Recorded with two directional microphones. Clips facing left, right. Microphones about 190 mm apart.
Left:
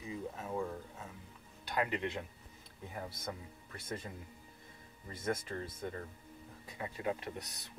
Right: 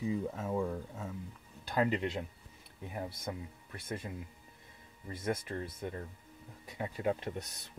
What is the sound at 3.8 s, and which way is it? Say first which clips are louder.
Speech: right 2 dB; 15° right (ahead or behind).